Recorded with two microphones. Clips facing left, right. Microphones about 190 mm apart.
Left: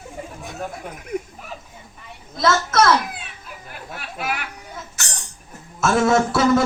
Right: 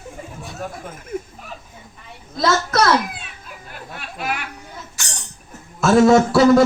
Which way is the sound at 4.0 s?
5° left (ahead or behind).